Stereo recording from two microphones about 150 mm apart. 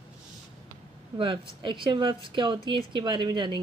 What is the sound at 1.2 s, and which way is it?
Speech, 35° right (ahead or behind).